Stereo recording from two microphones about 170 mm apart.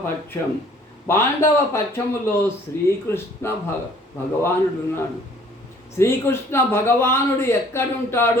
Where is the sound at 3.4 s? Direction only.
15° left (ahead or behind).